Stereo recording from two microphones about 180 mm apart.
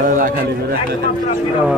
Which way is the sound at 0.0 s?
50° right (ahead or behind).